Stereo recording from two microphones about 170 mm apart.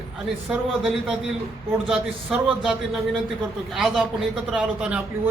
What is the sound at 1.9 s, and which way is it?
A man's voice, 5° right (ahead or behind).